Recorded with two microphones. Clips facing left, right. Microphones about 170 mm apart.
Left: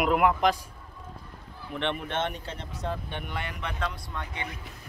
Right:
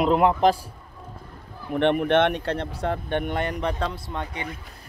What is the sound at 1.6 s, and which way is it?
A man's voice, 50° right (ahead or behind).